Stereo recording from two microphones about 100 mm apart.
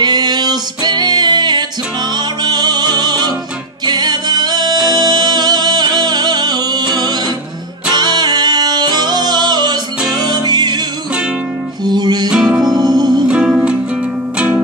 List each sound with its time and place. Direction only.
0.0 s music: 45° right (ahead or behind)
11.8 s music: 45° right (ahead or behind)
12.3 s music: 5° right (ahead or behind)
12.6 s music: 45° right (ahead or behind)
13.3 s music: 10° right (ahead or behind)